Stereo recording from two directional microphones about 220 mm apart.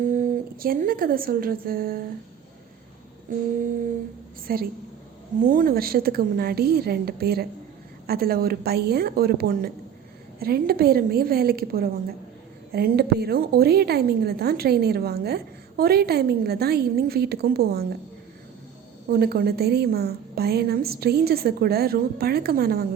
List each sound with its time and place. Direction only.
0.5 s a woman's voice: 40° right (ahead or behind)
4.5 s a woman's voice: 45° right (ahead or behind)
19.0 s a woman's voice: 45° right (ahead or behind)